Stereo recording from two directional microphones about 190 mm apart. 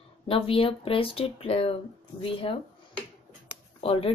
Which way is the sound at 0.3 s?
30° left (ahead or behind).